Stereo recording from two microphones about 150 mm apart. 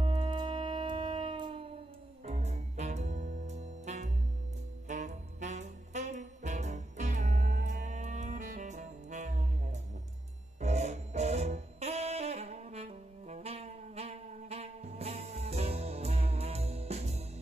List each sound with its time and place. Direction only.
0.0 s music: 30° right (ahead or behind)
2.2 s music: 50° right (ahead or behind)